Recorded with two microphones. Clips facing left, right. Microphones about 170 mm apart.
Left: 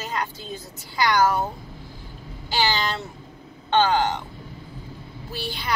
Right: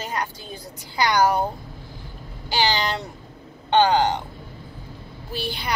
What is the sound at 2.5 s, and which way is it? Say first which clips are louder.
Speech: right 1 dB; 15° right (ahead or behind).